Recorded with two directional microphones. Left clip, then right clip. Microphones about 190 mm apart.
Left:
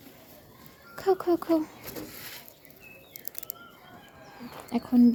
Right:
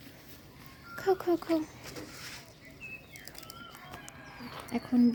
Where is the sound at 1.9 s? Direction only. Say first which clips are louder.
Left 3 dB; 50° left (ahead or behind).